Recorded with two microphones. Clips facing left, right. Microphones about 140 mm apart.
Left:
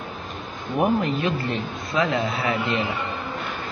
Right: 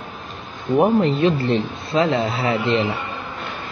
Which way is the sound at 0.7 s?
20° right (ahead or behind).